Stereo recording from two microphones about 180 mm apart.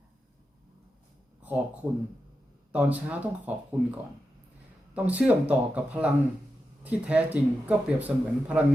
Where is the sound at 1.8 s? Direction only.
5° right (ahead or behind).